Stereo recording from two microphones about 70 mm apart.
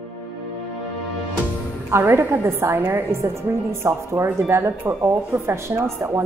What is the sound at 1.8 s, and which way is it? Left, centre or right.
Speech, right.